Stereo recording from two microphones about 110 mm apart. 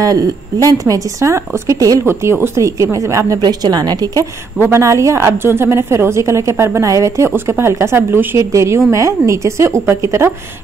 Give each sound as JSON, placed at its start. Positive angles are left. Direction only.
{"t": 0.7, "sound": "a woman's voice", "side_deg": -30}
{"t": 4.6, "sound": "a woman's voice", "side_deg": -25}